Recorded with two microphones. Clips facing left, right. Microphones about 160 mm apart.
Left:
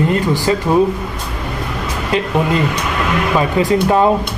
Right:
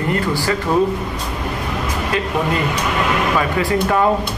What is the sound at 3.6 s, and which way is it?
Speech, 20° left (ahead or behind).